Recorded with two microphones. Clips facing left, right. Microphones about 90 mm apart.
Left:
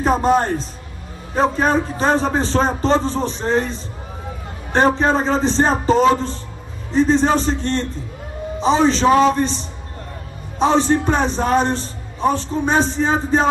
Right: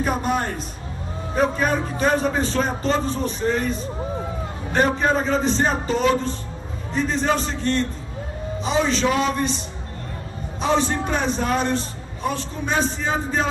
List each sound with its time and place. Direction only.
0.0 s a man's voice: 30° left (ahead or behind)
4.7 s a man's voice: 35° left (ahead or behind)